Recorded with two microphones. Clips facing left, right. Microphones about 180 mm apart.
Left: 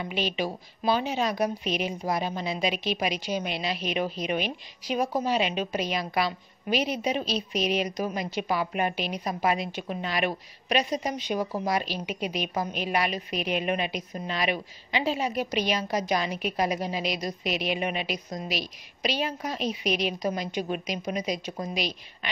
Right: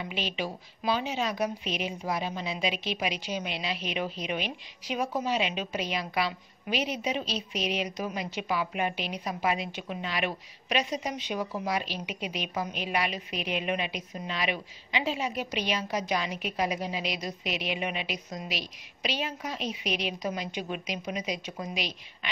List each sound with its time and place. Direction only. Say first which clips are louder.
0.0 s a woman's voice: left 4 dB; 40° left (ahead or behind)